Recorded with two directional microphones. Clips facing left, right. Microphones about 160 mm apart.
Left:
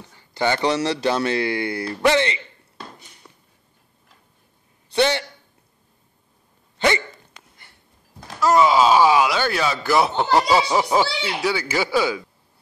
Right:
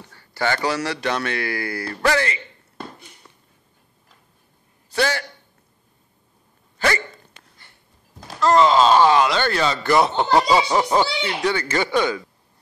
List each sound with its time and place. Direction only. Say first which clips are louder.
0.1 s speech: left 2 dB; 15° left (ahead or behind)
4.9 s a man's voice: left 3 dB; 25° left (ahead or behind)
8.4 s speech: right 1 dB; 10° left (ahead or behind)